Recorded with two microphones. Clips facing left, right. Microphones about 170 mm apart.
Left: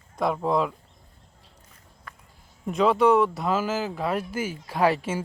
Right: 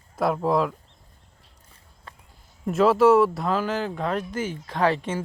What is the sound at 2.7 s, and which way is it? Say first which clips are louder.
Speech: right 3 dB; 5° right (ahead or behind).